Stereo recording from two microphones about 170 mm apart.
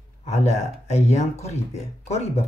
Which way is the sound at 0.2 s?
40° left (ahead or behind).